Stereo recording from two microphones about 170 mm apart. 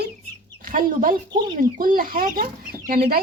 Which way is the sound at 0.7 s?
50° right (ahead or behind).